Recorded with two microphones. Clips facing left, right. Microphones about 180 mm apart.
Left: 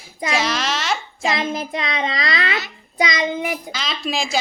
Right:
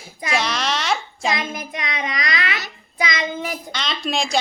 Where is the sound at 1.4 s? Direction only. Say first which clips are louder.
Left 5 dB; 25° left (ahead or behind).